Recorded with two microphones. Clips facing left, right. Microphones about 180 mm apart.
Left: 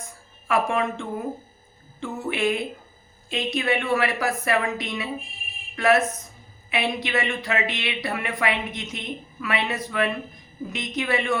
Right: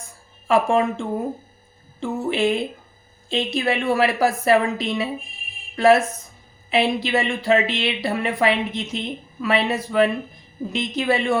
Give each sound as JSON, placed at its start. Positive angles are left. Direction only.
{"t": 0.4, "sound": "a woman's voice", "side_deg": -30}